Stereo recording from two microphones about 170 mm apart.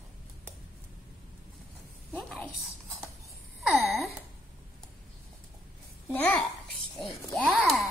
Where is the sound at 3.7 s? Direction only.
Centre (ahead or behind).